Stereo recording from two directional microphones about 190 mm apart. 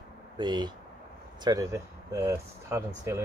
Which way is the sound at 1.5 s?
15° right (ahead or behind).